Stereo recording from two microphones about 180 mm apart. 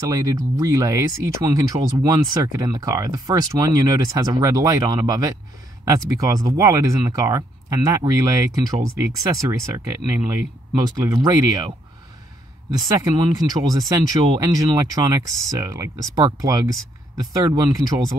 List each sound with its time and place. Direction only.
0.1 s speech: 20° right (ahead or behind)
12.7 s speech: 20° right (ahead or behind)